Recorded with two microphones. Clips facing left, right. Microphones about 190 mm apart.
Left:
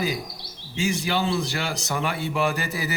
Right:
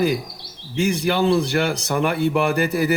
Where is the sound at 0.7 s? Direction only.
55° right (ahead or behind).